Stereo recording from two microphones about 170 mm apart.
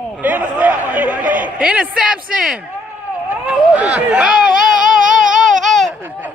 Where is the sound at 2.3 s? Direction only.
5° right (ahead or behind).